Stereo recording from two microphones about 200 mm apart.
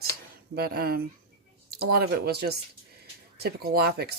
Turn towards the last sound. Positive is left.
turn(degrees=-50)  # may be behind; listen again after turning